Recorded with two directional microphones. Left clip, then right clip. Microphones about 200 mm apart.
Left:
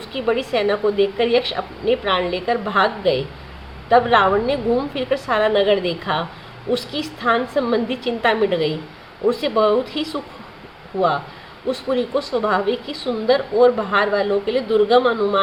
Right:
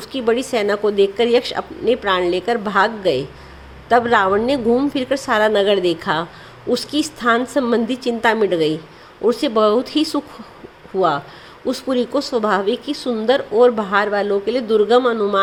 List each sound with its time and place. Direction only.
0.1 s a woman's voice: 40° right (ahead or behind)
11.7 s speech: 40° right (ahead or behind)